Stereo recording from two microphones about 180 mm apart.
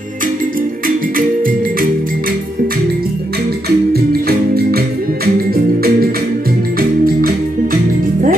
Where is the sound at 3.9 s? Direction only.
60° right (ahead or behind).